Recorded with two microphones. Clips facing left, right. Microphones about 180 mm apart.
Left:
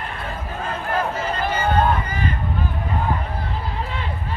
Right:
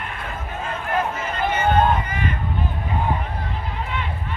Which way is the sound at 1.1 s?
35° left (ahead or behind).